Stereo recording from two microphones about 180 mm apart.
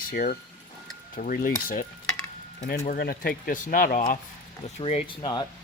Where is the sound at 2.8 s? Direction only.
55° left (ahead or behind).